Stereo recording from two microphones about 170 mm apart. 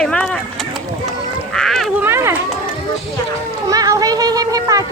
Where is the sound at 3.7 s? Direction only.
20° right (ahead or behind).